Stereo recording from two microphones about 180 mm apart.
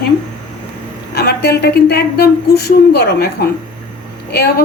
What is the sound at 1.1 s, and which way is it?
Speech, 65° left (ahead or behind).